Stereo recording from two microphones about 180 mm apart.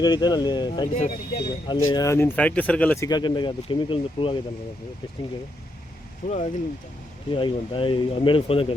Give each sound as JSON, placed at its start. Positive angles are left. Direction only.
{"t": 0.0, "sound": "speech", "side_deg": 25}
{"t": 6.2, "sound": "speech", "side_deg": 40}
{"t": 7.3, "sound": "speech", "side_deg": 30}